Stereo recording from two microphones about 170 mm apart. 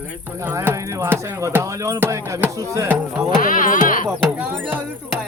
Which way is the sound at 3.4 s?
50° left (ahead or behind).